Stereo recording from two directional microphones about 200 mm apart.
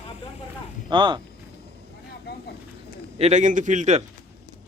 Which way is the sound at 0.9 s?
25° right (ahead or behind).